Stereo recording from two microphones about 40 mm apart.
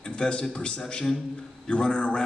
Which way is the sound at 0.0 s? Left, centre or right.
Left.